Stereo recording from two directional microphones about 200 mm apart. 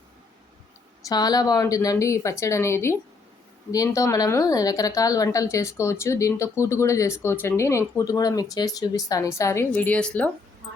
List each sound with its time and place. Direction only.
1.0 s a woman's voice: 20° left (ahead or behind)